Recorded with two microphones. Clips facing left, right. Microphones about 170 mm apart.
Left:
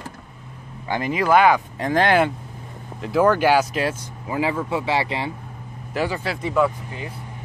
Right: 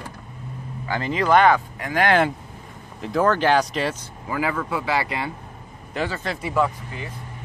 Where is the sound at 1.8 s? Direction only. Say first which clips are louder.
Left 3 dB; 30° left (ahead or behind).